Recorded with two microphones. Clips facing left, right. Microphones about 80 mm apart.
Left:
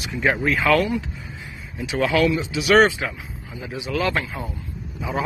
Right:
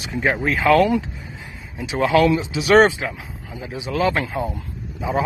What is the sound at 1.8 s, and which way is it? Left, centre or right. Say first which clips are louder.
Speech: right 3 dB; right.